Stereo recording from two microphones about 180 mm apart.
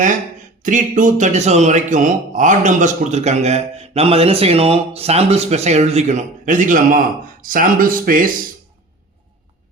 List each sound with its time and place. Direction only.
0.6 s a man's voice: 45° right (ahead or behind)